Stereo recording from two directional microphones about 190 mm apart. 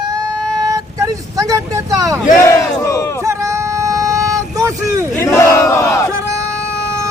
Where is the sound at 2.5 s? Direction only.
15° left (ahead or behind).